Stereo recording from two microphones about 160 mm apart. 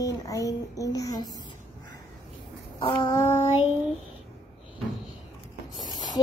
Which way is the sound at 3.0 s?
20° left (ahead or behind).